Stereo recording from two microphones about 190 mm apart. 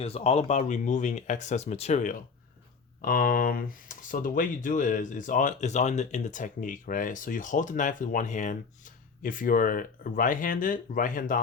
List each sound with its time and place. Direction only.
0.0 s speech: 30° left (ahead or behind)